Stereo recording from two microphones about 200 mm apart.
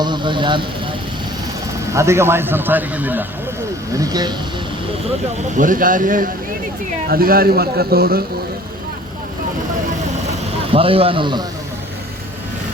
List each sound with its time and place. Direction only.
0.0 s a man's voice: 25° right (ahead or behind)
1.9 s a man's voice: 15° right (ahead or behind)
5.5 s a man's voice: 40° right (ahead or behind)
10.7 s a man's voice: 30° right (ahead or behind)